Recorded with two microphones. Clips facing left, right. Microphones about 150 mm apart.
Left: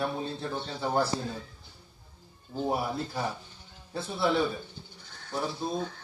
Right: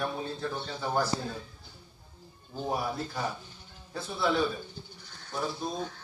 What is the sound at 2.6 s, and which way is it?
A man's voice, 25° left (ahead or behind).